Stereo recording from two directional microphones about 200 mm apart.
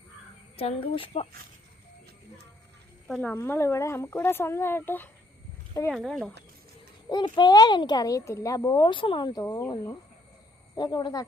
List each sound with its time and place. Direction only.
0.5 s a child's voice: 30° left (ahead or behind)
3.1 s speech: 5° left (ahead or behind)
7.1 s a child's voice: 20° left (ahead or behind)